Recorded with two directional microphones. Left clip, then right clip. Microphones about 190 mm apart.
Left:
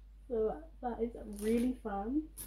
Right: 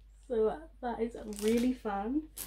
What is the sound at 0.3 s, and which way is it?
Speech, 20° right (ahead or behind).